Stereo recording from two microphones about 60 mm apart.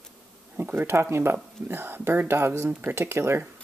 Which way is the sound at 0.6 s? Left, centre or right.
Right.